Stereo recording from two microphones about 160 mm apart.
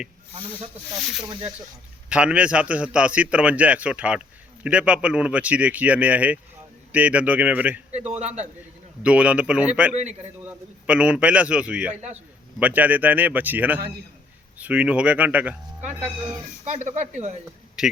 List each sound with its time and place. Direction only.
2.0 s a man's voice: 5° right (ahead or behind)
8.2 s speech: 45° right (ahead or behind)
9.0 s a man's voice: 10° right (ahead or behind)
9.9 s speech: 45° right (ahead or behind)
10.8 s a man's voice: 5° right (ahead or behind)
16.6 s speech: 45° right (ahead or behind)
17.8 s a man's voice: 5° right (ahead or behind)